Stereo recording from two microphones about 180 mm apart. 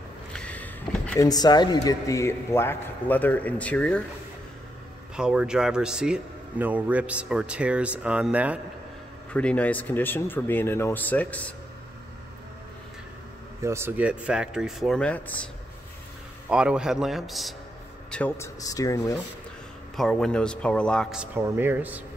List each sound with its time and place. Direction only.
0.3 s speech: 5° left (ahead or behind)
5.1 s speech: 5° right (ahead or behind)
9.3 s speech: 5° left (ahead or behind)
13.6 s speech: 15° right (ahead or behind); by 15.3 s 10° left (ahead or behind)
16.4 s speech: 5° right (ahead or behind); by 19.1 s 20° left (ahead or behind)
20.0 s speech: 5° left (ahead or behind)